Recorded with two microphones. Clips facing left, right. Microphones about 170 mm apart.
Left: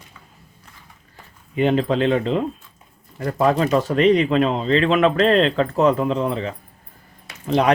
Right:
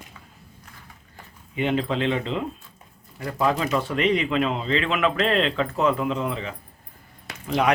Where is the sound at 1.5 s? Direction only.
40° left (ahead or behind).